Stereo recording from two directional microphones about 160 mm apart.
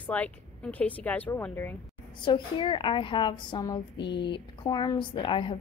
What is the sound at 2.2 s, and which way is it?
A woman's voice, 30° left (ahead or behind).